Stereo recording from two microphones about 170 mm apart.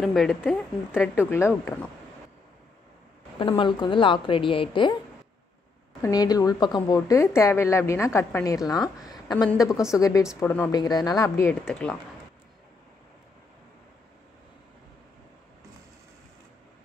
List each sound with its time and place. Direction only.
0.0 s a woman's voice: centre (ahead or behind)
3.3 s a woman's voice: 30° left (ahead or behind)
6.0 s a woman's voice: 20° left (ahead or behind)
9.7 s a woman's voice: 5° right (ahead or behind)
9.9 s a woman's voice: 20° left (ahead or behind)
10.4 s a woman's voice: 10° left (ahead or behind)
10.7 s a woman's voice: 25° left (ahead or behind)